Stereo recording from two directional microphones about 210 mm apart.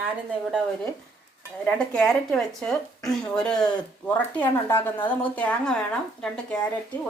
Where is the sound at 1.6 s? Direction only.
5° left (ahead or behind).